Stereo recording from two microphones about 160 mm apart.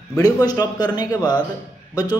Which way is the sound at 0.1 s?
20° left (ahead or behind).